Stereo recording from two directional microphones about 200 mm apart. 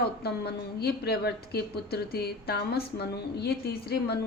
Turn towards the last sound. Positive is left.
turn(degrees=50)  # may be behind; listen again after turning